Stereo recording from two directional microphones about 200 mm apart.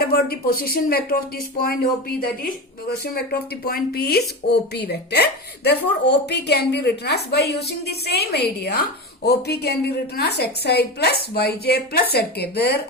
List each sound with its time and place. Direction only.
0.0 s a woman's voice: 50° left (ahead or behind)